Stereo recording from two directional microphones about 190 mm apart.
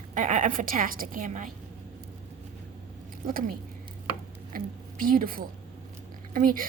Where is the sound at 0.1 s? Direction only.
45° right (ahead or behind).